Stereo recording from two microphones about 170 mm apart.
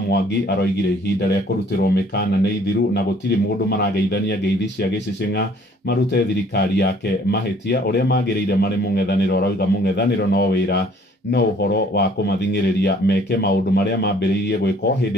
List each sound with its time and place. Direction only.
0.1 s a man's voice: 80° left